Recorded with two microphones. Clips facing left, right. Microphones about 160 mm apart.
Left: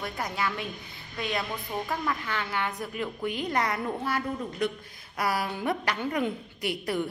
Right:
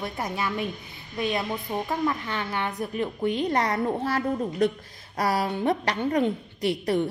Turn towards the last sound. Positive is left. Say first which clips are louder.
# right 5 dB
turn(degrees=-30)  # may be behind; listen again after turning